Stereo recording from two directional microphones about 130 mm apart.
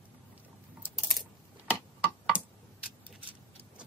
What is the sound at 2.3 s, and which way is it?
Tick-tock, 10° right (ahead or behind).